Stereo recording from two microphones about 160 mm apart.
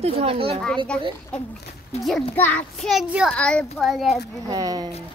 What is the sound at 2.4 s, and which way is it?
Speech, 10° left (ahead or behind).